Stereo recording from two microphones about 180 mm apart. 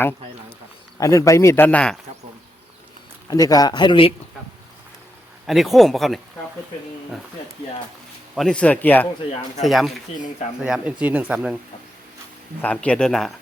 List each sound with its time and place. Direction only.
0.9 s speech: 20° left (ahead or behind)
3.2 s speech: 20° left (ahead or behind)
5.5 s speech: centre (ahead or behind)
8.4 s speech: 5° left (ahead or behind)
12.6 s speech: 5° left (ahead or behind)